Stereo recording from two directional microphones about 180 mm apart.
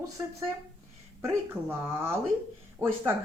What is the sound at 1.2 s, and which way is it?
Speech, 15° right (ahead or behind).